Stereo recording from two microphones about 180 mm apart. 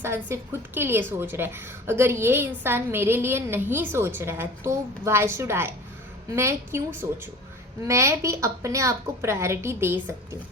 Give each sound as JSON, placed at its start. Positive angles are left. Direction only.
{"t": 0.0, "sound": "a woman's voice", "side_deg": -15}